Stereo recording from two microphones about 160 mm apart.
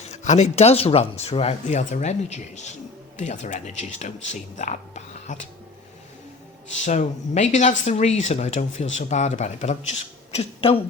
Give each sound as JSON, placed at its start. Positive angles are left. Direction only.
{"t": 0.0, "sound": "speech", "side_deg": 45}
{"t": 6.7, "sound": "speech", "side_deg": 45}